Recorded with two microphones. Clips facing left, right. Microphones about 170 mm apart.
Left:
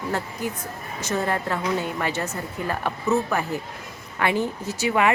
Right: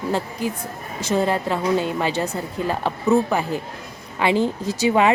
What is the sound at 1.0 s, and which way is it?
A woman's voice, 20° right (ahead or behind).